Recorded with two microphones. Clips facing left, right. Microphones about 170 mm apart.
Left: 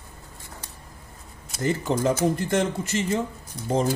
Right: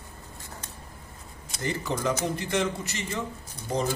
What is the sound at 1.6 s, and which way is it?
Speech, 50° left (ahead or behind).